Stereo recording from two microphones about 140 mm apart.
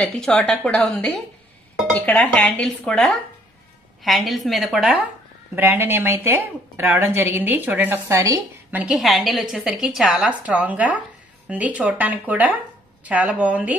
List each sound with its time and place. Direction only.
0.0 s a woman's voice: 5° left (ahead or behind)
5.6 s a woman's voice: 15° right (ahead or behind)
8.7 s a woman's voice: 5° right (ahead or behind)